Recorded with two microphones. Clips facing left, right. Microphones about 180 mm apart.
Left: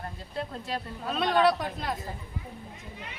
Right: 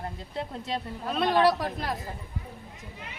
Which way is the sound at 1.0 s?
Centre (ahead or behind).